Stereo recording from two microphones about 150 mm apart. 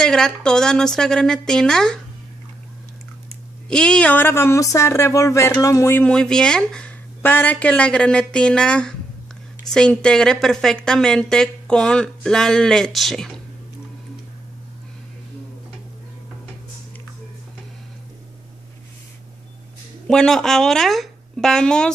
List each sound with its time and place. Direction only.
0.0 s a woman's voice: 5° left (ahead or behind)
3.6 s speech: 5° left (ahead or behind)
6.0 s a woman's voice: 5° left (ahead or behind)
20.1 s a woman's voice: 5° left (ahead or behind)